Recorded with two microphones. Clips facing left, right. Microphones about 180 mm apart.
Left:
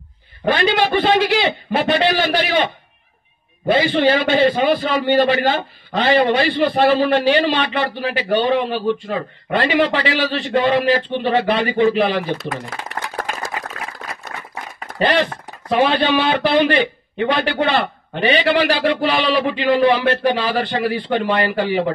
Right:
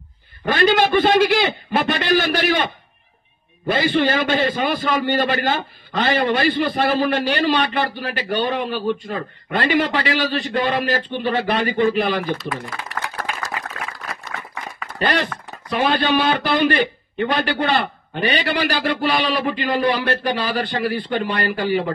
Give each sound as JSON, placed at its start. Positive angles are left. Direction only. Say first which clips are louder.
{"t": 0.5, "sound": "a man's voice", "louder": "even", "side_deg": -45}
{"t": 4.0, "sound": "a man's voice", "louder": "left 4 dB", "side_deg": -45}
{"t": 12.2, "sound": "speech", "louder": "left 1 dB", "side_deg": 45}
{"t": 13.1, "sound": "a sound", "louder": "left 2 dB", "side_deg": 45}
{"t": 15.0, "sound": "a man's voice", "louder": "left 4 dB", "side_deg": -45}